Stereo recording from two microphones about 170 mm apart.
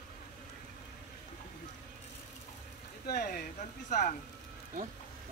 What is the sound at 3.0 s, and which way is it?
Speech, 65° left (ahead or behind).